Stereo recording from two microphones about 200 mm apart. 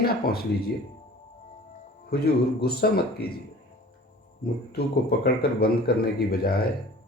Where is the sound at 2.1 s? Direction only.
50° left (ahead or behind).